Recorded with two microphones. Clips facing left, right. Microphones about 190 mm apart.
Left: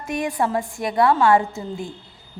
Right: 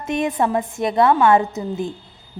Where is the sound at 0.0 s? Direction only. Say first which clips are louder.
Right 3 dB; 25° right (ahead or behind).